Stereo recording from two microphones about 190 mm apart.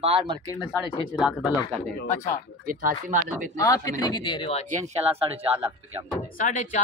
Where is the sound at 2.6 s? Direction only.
45° right (ahead or behind).